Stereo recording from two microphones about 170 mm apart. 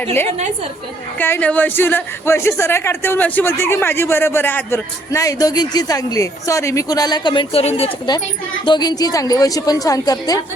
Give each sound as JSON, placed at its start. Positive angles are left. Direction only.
{"t": 1.2, "sound": "a man's voice", "side_deg": 10}